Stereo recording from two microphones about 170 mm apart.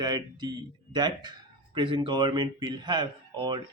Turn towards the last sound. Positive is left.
turn(degrees=-25)  # may be behind; listen again after turning